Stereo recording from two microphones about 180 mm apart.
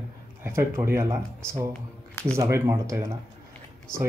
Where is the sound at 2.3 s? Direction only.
15° right (ahead or behind).